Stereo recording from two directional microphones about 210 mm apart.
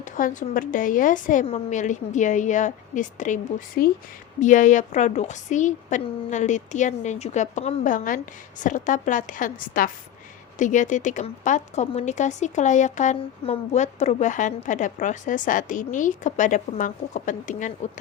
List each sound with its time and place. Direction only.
0.0 s a woman's voice: 40° left (ahead or behind)